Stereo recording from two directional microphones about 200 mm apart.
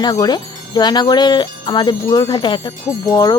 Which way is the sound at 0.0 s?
20° left (ahead or behind).